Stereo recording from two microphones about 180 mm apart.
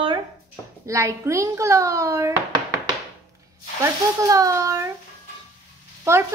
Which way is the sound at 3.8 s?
20° right (ahead or behind).